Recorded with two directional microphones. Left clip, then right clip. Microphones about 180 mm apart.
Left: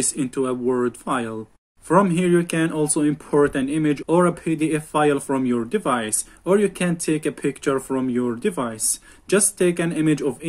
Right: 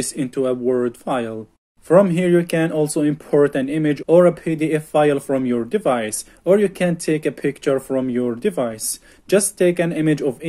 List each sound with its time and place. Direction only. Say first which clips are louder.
0.0 s speech: right 2 dB; 15° right (ahead or behind)